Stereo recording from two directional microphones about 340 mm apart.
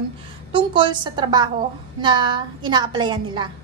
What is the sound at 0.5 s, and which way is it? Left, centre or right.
A woman's voice, centre.